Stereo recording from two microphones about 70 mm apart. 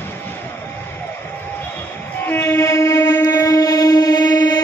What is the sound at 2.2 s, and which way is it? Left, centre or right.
Train, left.